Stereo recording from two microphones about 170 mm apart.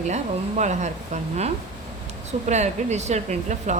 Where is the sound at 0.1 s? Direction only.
45° right (ahead or behind).